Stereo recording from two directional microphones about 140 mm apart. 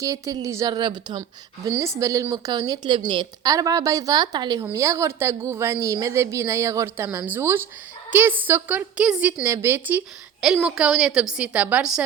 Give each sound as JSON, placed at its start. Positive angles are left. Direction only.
{"t": 0.0, "sound": "a woman's voice", "side_deg": -25}